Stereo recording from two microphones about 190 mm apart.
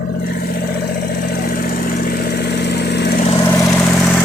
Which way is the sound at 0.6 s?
55° left (ahead or behind).